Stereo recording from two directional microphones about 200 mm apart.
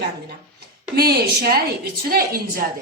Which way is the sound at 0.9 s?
50° right (ahead or behind).